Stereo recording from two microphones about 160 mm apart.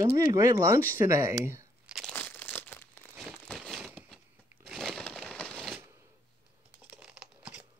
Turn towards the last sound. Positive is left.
turn(degrees=-5)  # may be behind; listen again after turning